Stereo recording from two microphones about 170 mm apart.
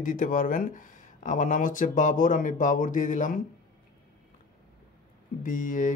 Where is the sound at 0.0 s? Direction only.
50° left (ahead or behind).